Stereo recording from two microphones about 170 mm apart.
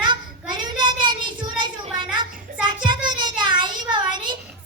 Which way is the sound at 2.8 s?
25° right (ahead or behind).